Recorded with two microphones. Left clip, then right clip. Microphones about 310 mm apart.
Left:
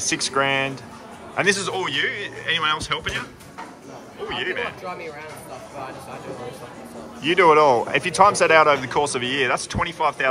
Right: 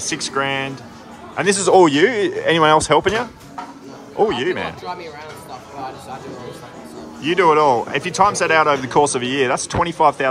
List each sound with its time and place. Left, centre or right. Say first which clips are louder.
0.1 s speech: even; centre
4.3 s speech: right 5 dB; centre
7.2 s speech: right 1 dB; centre